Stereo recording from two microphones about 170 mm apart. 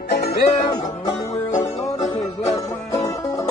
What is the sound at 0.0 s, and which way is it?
Music, 70° left (ahead or behind).